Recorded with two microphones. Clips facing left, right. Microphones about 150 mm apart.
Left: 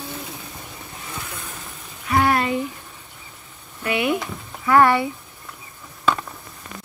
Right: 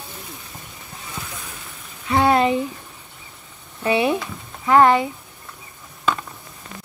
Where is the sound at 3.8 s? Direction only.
30° right (ahead or behind).